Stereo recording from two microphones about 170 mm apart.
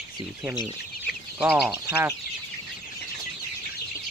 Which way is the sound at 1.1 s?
70° left (ahead or behind).